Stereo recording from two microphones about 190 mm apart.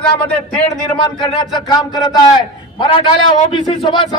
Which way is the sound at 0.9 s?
20° left (ahead or behind).